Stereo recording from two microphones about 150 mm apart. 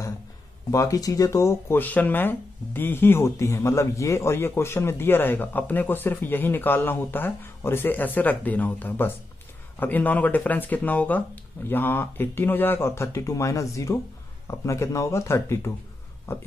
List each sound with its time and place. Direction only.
0.7 s speech: 20° left (ahead or behind)